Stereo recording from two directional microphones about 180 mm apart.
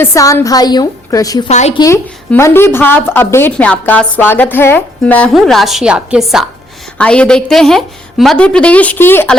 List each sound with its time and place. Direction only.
0.0 s a woman's voice: 15° left (ahead or behind)
1.5 s a woman's voice: 35° left (ahead or behind)
1.8 s a woman's voice: 15° left (ahead or behind)